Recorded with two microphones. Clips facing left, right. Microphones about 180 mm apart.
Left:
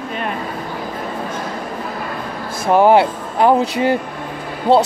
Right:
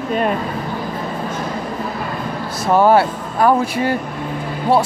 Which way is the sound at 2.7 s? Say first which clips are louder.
Left 1 dB; 15° left (ahead or behind).